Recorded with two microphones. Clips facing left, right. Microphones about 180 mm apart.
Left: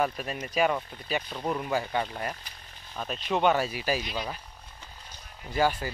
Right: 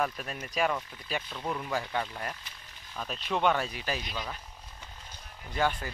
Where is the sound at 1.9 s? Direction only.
Centre (ahead or behind).